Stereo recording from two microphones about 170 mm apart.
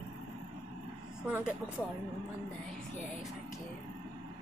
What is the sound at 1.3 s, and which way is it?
Speech, 10° right (ahead or behind).